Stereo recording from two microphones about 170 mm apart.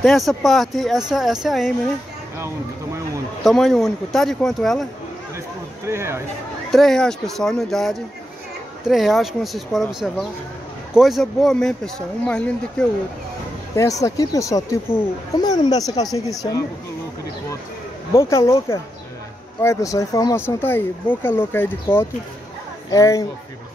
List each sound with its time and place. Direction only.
0.0 s speech: centre (ahead or behind)
2.3 s speech: 15° right (ahead or behind)
3.4 s speech: centre (ahead or behind)
5.9 s speech: 15° right (ahead or behind)
6.7 s speech: centre (ahead or behind)
13.7 s speech: 20° left (ahead or behind)
18.1 s speech: 15° left (ahead or behind)